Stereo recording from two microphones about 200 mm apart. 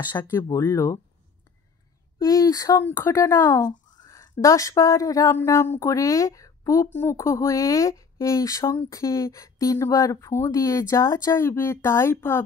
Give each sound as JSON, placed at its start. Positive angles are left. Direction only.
{"t": 0.1, "sound": "speech", "side_deg": 20}
{"t": 2.1, "sound": "speech", "side_deg": 15}